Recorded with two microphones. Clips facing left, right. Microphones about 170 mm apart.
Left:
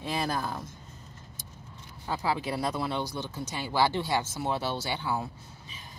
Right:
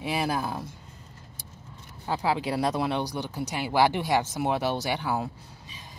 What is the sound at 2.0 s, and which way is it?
Speech, 25° right (ahead or behind).